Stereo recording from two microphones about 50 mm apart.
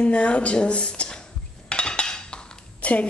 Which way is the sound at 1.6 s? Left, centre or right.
Centre.